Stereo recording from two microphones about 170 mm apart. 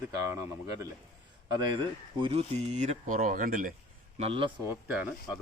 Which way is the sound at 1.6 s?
30° right (ahead or behind).